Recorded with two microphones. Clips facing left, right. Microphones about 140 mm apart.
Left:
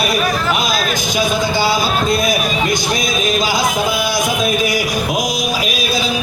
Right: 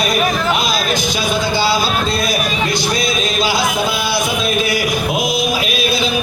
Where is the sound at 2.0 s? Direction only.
20° left (ahead or behind).